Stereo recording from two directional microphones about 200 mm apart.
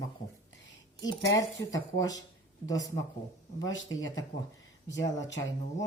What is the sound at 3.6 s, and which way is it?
Speech, 75° left (ahead or behind).